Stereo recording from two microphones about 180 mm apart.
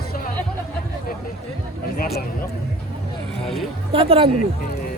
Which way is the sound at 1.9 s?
55° left (ahead or behind).